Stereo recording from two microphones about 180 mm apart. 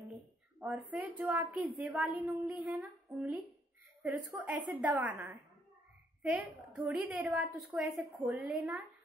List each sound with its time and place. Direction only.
0.6 s a woman's voice: 5° right (ahead or behind)
6.9 s a woman's voice: 5° right (ahead or behind)